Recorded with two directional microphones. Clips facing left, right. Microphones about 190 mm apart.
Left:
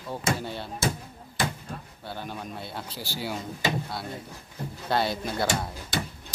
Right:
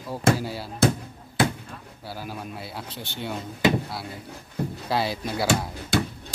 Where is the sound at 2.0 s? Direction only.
5° right (ahead or behind).